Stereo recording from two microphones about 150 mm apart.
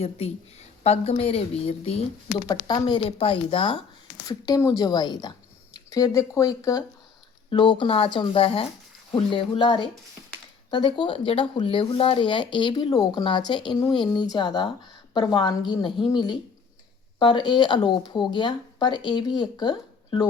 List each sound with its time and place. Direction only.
0.2 s speech: 40° left (ahead or behind)
2.5 s speech: 25° left (ahead or behind)
4.3 s speech: 25° left (ahead or behind)